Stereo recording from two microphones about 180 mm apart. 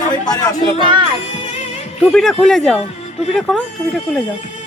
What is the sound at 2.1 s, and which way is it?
Speech, centre (ahead or behind).